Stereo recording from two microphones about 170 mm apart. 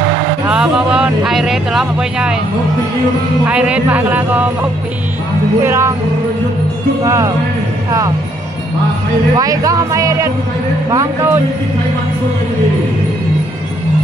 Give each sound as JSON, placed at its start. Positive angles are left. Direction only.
{"t": 0.5, "sound": "speech", "side_deg": -5}
{"t": 3.4, "sound": "speech", "side_deg": -5}
{"t": 5.6, "sound": "speech", "side_deg": -15}
{"t": 7.1, "sound": "speech", "side_deg": -15}
{"t": 9.4, "sound": "speech", "side_deg": -20}